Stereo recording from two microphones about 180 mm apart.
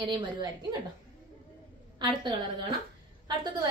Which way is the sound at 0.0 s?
25° right (ahead or behind).